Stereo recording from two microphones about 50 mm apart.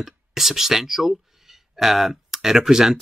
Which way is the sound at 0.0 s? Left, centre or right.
Centre.